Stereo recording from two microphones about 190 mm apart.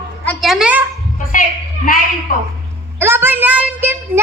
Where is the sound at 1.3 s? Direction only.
45° left (ahead or behind).